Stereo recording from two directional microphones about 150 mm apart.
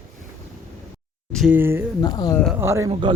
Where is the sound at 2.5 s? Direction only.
15° right (ahead or behind).